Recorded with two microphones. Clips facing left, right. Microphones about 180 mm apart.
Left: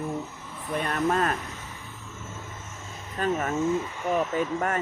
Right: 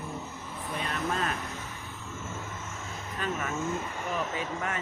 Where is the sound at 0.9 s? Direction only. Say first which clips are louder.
Left 7 dB; 50° left (ahead or behind).